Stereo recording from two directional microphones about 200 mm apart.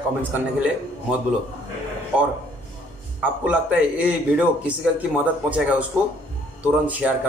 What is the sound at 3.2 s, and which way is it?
Speech, 5° right (ahead or behind).